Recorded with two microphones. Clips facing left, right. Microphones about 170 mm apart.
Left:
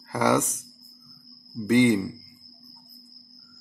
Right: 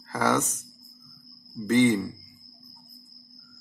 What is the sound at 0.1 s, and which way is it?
Speech, 10° left (ahead or behind).